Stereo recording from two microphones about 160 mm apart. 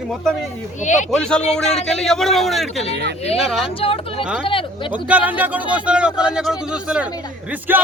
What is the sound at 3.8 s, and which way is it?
Speech, 35° left (ahead or behind).